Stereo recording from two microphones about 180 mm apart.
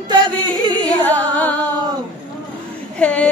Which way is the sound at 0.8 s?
10° left (ahead or behind).